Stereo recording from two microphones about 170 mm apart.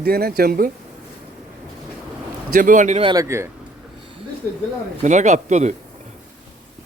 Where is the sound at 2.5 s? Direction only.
50° right (ahead or behind).